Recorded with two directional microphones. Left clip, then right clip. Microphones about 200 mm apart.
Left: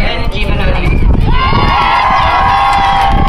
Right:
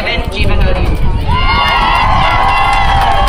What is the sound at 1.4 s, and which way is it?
Run, 45° right (ahead or behind).